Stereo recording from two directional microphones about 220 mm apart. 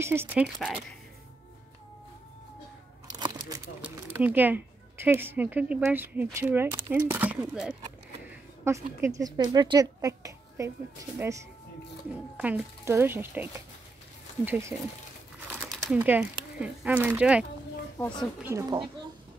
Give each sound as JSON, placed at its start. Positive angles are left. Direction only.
{"t": 0.0, "sound": "speech", "side_deg": -10}
{"t": 3.1, "sound": "a sound", "side_deg": -20}
{"t": 3.8, "sound": "speech", "side_deg": -5}
{"t": 8.3, "sound": "a sound", "side_deg": -10}
{"t": 9.0, "sound": "speech", "side_deg": -15}
{"t": 15.9, "sound": "speech", "side_deg": -5}
{"t": 17.9, "sound": "speech", "side_deg": 15}
{"t": 18.4, "sound": "speech", "side_deg": -10}